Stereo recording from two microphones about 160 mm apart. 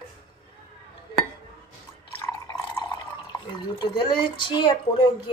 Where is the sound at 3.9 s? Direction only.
30° left (ahead or behind).